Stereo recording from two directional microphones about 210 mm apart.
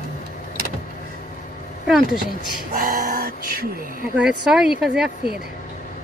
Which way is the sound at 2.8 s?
40° right (ahead or behind).